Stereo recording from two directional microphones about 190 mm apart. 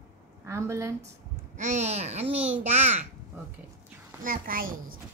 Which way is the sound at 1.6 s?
35° right (ahead or behind).